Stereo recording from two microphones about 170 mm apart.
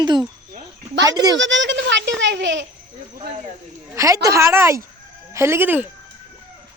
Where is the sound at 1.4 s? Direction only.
90° right.